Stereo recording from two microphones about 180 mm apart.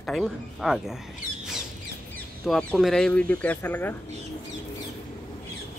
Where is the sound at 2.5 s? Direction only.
5° left (ahead or behind).